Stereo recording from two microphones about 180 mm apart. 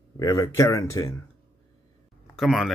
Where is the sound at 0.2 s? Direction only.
15° left (ahead or behind).